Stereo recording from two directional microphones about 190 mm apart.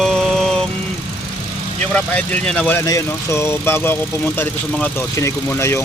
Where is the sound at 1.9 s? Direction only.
5° left (ahead or behind).